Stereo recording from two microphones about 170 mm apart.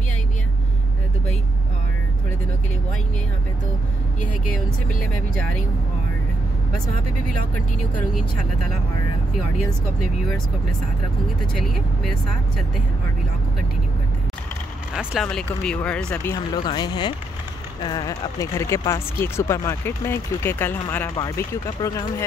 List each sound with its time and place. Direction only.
5.3 s speech: 5° left (ahead or behind)
11.5 s speech: centre (ahead or behind)
15.0 s speech: centre (ahead or behind)
16.3 s speech: 25° left (ahead or behind)